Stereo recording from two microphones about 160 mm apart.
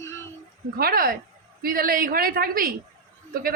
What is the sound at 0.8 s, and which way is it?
Speech, 70° right (ahead or behind).